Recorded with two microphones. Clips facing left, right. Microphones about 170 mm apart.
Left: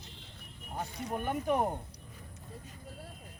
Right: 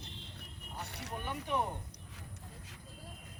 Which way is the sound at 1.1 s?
45° left (ahead or behind).